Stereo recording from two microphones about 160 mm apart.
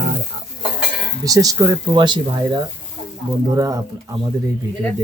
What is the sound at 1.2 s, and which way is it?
Speech, 20° right (ahead or behind).